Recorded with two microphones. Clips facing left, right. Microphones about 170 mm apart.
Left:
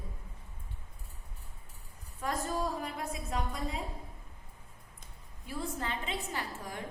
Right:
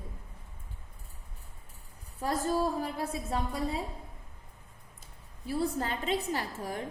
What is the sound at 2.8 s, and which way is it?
Speech, 30° right (ahead or behind).